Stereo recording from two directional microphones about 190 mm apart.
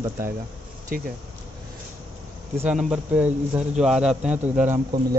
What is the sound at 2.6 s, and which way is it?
Speech, 5° right (ahead or behind).